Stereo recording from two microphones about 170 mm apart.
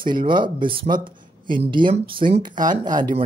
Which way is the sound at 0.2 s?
30° right (ahead or behind).